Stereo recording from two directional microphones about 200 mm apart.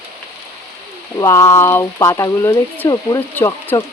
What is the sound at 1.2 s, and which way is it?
Speech, 15° left (ahead or behind).